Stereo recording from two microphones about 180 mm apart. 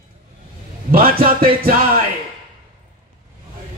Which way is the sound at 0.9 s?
55° right (ahead or behind).